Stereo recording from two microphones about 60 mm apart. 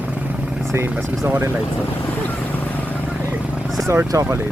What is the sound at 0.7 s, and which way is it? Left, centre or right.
Speech, right.